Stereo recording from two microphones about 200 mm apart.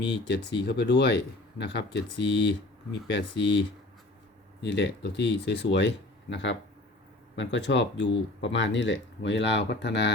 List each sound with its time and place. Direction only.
0.0 s speech: 60° left (ahead or behind)